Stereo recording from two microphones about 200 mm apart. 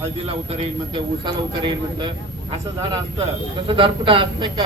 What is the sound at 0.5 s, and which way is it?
Speech, 25° right (ahead or behind).